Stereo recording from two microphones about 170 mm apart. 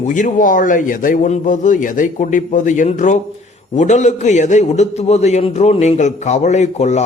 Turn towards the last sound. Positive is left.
turn(degrees=40)  # may be behind; listen again after turning